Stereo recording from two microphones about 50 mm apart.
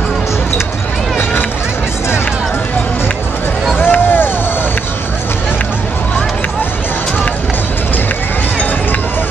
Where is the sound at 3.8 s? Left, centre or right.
Left.